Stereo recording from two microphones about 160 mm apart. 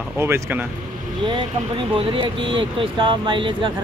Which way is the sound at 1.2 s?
30° right (ahead or behind).